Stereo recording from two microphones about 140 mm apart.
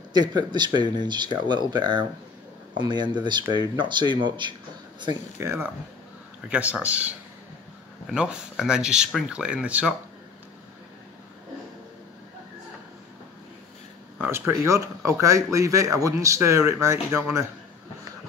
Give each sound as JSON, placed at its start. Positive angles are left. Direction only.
{"t": 0.1, "sound": "speech", "side_deg": -30}
{"t": 5.4, "sound": "speech", "side_deg": -20}
{"t": 14.2, "sound": "speech", "side_deg": -15}